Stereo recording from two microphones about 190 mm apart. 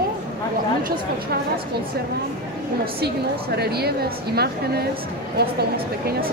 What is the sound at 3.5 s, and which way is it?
A woman's voice, 55° right (ahead or behind).